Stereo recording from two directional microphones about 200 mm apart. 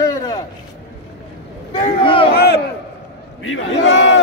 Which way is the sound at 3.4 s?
75° left (ahead or behind).